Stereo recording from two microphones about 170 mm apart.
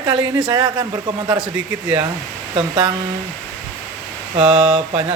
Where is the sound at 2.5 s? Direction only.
25° right (ahead or behind).